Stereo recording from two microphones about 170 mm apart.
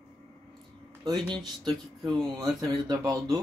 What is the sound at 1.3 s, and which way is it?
Speech, 25° right (ahead or behind).